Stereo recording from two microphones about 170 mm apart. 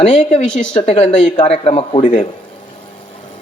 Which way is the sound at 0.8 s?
40° left (ahead or behind).